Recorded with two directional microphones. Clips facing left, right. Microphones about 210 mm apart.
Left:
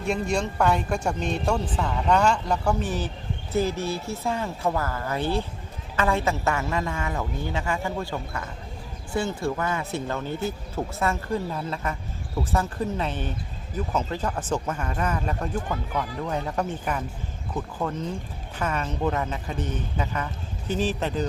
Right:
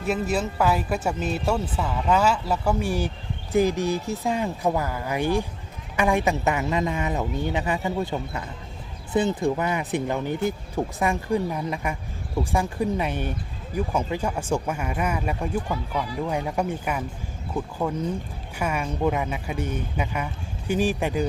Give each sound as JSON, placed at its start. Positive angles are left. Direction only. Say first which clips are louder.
{"t": 0.0, "sound": "a woman's voice", "louder": "right 1 dB", "side_deg": -5}